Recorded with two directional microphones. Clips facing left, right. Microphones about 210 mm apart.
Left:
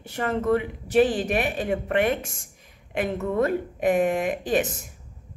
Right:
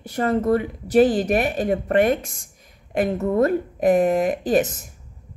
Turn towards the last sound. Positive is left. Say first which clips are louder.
# right 5 dB
turn(degrees=-40)  # may be behind; listen again after turning